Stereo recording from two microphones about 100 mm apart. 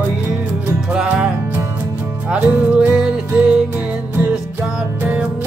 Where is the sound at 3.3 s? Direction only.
15° right (ahead or behind).